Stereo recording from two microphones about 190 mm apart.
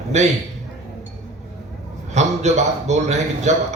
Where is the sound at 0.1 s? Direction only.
35° right (ahead or behind).